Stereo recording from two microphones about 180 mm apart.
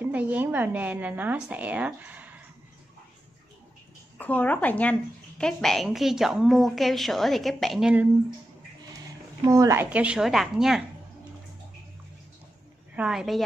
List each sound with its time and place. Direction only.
0.1 s a woman's voice: 10° right (ahead or behind)
4.2 s a woman's voice: 10° left (ahead or behind); by 8.1 s 5° right (ahead or behind)
9.4 s a woman's voice: 20° right (ahead or behind)
9.8 s a woman's voice: 5° right (ahead or behind)
12.9 s a woman's voice: 5° right (ahead or behind)